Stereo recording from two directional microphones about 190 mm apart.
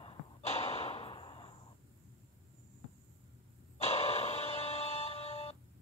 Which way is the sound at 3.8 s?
30° left (ahead or behind).